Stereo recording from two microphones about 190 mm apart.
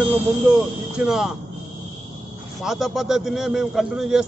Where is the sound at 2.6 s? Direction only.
Centre (ahead or behind).